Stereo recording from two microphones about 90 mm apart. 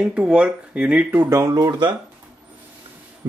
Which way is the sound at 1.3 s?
45° right (ahead or behind).